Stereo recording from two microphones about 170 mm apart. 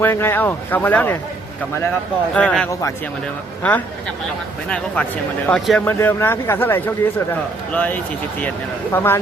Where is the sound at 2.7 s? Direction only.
20° left (ahead or behind).